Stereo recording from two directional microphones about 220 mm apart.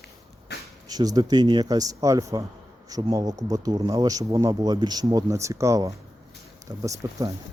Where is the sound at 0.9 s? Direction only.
15° right (ahead or behind).